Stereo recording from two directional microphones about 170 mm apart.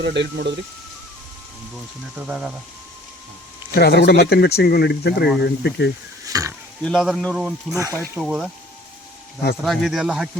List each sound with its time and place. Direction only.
0.0 s speech: 90° right
2.1 s speech: 5° right (ahead or behind)
3.8 s speech: 70° left (ahead or behind)
6.2 s stir: 20° right (ahead or behind)
6.8 s speech: centre (ahead or behind)
7.8 s speech: 15° right (ahead or behind)
8.2 s speech: centre (ahead or behind)
9.6 s speech: centre (ahead or behind)